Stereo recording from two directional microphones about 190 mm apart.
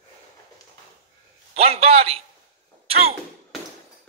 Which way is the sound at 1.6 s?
30° right (ahead or behind).